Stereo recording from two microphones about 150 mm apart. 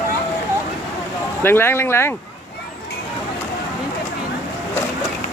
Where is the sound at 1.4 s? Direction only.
15° left (ahead or behind).